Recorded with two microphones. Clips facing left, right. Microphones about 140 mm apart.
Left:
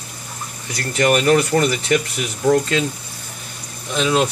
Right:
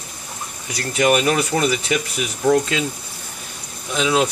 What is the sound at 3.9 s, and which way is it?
Speech, 5° right (ahead or behind).